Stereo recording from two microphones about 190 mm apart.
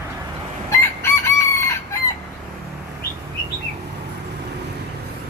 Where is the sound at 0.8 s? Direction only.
15° left (ahead or behind).